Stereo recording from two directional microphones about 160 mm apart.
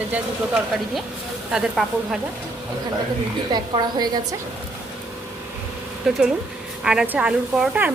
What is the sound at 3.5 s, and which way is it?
Speech, 25° right (ahead or behind).